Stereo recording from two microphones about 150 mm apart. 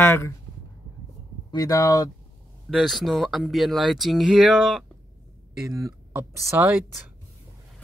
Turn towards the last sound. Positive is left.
turn(degrees=-15)  # may be behind; listen again after turning